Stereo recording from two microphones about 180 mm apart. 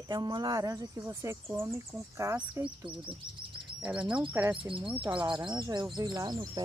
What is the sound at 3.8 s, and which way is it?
Speech, 5° right (ahead or behind).